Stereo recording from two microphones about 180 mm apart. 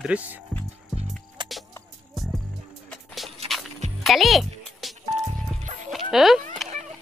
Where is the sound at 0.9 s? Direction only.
Centre (ahead or behind).